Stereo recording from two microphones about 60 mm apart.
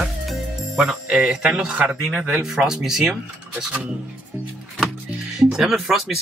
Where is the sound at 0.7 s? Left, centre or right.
Centre.